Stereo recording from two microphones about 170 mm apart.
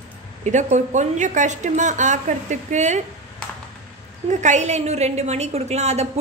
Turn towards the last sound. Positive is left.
turn(degrees=-40)  # may be behind; listen again after turning